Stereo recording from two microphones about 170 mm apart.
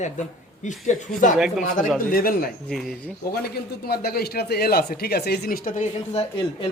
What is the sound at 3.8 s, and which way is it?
Speech, 65° left (ahead or behind).